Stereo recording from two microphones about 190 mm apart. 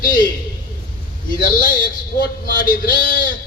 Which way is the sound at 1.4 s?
45° left (ahead or behind).